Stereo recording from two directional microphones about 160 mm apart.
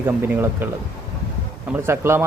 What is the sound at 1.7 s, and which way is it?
Speech, 15° right (ahead or behind).